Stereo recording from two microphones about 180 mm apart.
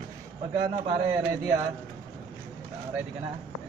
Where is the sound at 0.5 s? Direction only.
20° right (ahead or behind).